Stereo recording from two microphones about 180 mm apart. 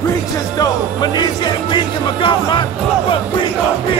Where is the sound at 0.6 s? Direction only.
25° left (ahead or behind).